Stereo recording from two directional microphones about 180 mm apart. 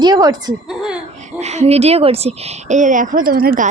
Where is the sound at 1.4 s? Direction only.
35° right (ahead or behind); by 3.6 s 55° right (ahead or behind).